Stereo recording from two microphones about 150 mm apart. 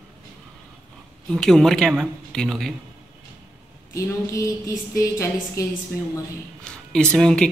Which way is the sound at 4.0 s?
20° left (ahead or behind).